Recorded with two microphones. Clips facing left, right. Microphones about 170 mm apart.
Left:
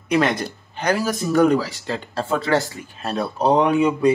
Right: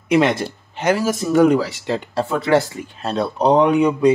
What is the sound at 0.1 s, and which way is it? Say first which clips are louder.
Speech: right 3 dB; 25° right (ahead or behind).